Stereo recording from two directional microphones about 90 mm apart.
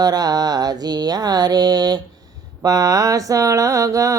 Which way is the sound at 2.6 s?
40° right (ahead or behind).